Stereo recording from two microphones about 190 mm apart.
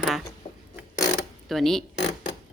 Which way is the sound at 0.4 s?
30° left (ahead or behind).